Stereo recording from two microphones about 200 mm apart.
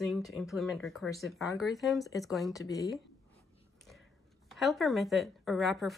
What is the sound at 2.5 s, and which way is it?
Speech, 15° left (ahead or behind).